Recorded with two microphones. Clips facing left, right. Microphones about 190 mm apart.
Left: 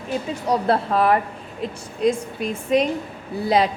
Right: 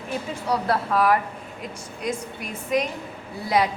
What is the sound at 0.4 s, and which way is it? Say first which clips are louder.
A woman's voice: left 4 dB; 25° left (ahead or behind).